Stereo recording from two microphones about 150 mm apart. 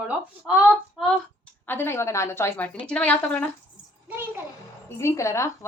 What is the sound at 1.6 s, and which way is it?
A woman's voice, 15° left (ahead or behind).